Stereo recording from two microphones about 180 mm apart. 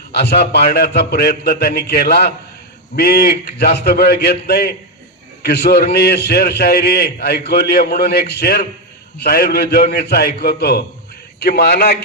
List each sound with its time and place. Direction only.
0.1 s a man's voice: 65° left (ahead or behind)